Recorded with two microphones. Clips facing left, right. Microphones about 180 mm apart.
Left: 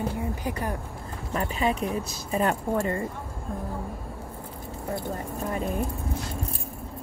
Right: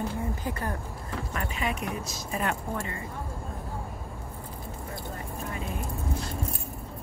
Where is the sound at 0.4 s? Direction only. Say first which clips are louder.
Left 2 dB; 15° left (ahead or behind).